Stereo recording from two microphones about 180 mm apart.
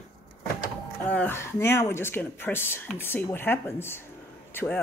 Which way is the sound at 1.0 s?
10° left (ahead or behind).